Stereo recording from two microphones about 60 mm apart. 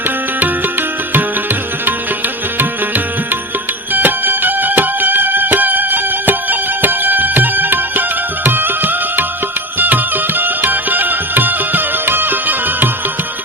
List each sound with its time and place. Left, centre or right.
0.3 s music: right
3.9 s music: right